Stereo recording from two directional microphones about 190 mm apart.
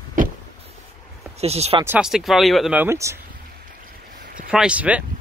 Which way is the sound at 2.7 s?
15° right (ahead or behind).